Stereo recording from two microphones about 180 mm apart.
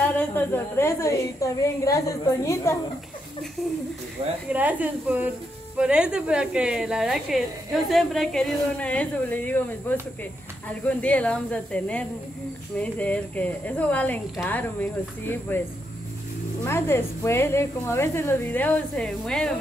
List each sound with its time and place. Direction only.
0.0 s speech: 10° left (ahead or behind)
4.5 s a woman's voice: 10° right (ahead or behind); by 15.6 s 10° left (ahead or behind)
16.6 s speech: 15° left (ahead or behind)